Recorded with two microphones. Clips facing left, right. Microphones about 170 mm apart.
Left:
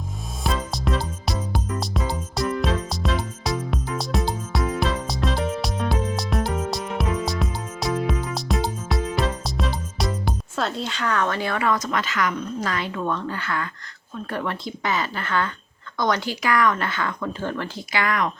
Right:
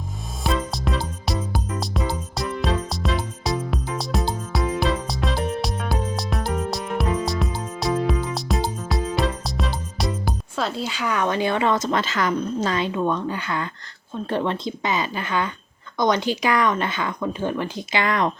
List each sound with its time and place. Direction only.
0.4 s music: centre (ahead or behind); by 12.6 s 30° right (ahead or behind)
12.6 s speech: 20° right (ahead or behind)